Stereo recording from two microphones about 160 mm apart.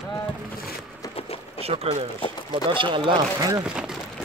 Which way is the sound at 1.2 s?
35° left (ahead or behind).